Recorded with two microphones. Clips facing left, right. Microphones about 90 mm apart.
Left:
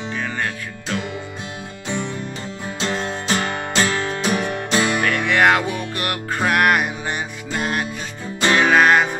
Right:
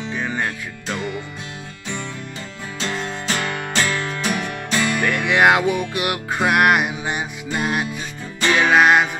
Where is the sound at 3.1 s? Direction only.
30° left (ahead or behind).